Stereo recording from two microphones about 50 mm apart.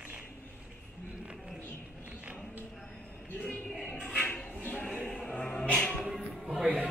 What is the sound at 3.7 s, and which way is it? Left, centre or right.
Music, centre.